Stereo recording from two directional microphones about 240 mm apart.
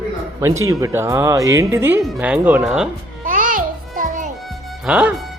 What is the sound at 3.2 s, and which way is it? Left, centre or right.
Music, right.